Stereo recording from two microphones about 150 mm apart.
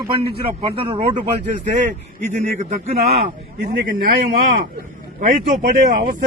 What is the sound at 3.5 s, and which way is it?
Speech, 80° right.